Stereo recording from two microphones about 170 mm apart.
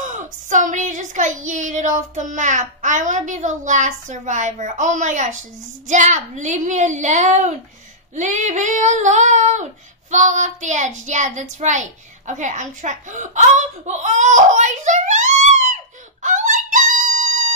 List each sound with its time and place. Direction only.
0.0 s a woman's voice: 45° right (ahead or behind)